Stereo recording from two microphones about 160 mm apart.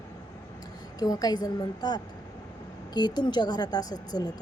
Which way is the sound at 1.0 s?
25° left (ahead or behind).